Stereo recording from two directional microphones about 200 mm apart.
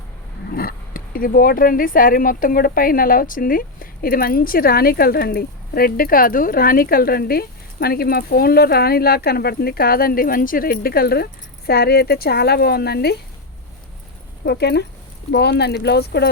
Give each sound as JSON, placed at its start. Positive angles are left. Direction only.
{"t": 0.5, "sound": "speech", "side_deg": 45}
{"t": 14.4, "sound": "speech", "side_deg": 55}